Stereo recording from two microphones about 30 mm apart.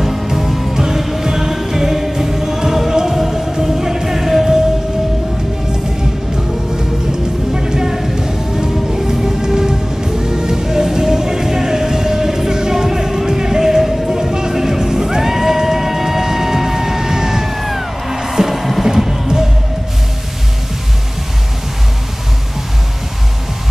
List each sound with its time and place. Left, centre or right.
0.0 s music: centre
6.7 s music: right
14.5 s music: centre